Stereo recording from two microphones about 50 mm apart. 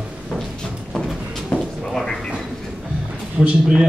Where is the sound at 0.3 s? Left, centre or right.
Centre.